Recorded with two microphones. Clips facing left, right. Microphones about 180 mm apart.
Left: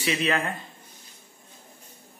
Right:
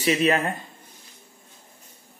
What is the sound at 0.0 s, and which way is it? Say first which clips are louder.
Speech: right 5 dB; 40° right (ahead or behind).